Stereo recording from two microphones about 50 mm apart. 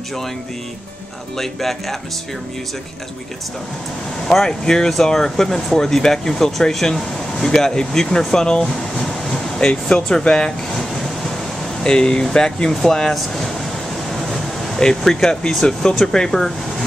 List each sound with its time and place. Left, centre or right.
1.4 s speech: centre
4.3 s speech: centre
9.0 s air conditioning: centre
10.2 s speech: centre
11.8 s speech: centre